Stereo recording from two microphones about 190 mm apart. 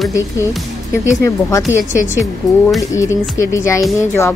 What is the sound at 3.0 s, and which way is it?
Speech, 15° left (ahead or behind).